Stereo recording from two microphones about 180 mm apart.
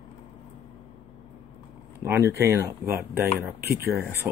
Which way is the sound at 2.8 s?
60° right (ahead or behind).